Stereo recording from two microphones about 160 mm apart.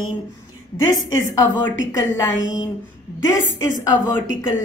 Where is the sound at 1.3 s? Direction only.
20° left (ahead or behind).